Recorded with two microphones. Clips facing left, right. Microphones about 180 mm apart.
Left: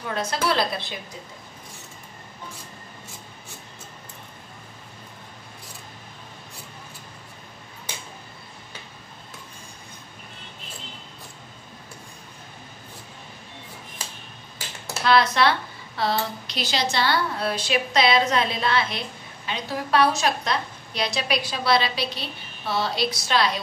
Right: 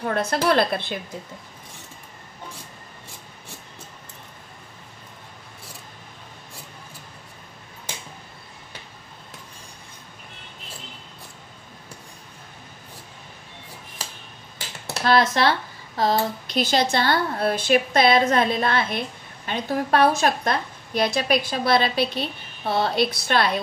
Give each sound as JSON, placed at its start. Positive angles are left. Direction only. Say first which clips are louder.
{"t": 0.0, "sound": "speech", "louder": "right 4 dB", "side_deg": -55}
{"t": 15.0, "sound": "a sound", "louder": "right 1 dB", "side_deg": -45}
{"t": 16.0, "sound": "speech", "louder": "right 4 dB", "side_deg": -45}